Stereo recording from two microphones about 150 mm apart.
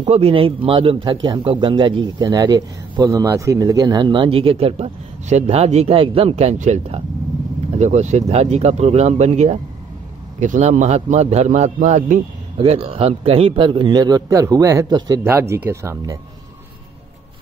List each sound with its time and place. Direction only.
0.0 s speech: 40° right (ahead or behind)
15.2 s speech: 15° right (ahead or behind)